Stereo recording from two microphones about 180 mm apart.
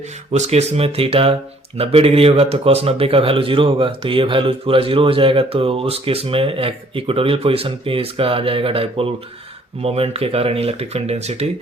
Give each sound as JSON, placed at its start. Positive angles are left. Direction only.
{"t": 0.3, "sound": "speech", "side_deg": -35}